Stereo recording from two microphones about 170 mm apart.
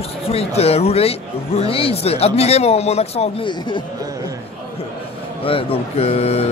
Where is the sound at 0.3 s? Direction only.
35° left (ahead or behind).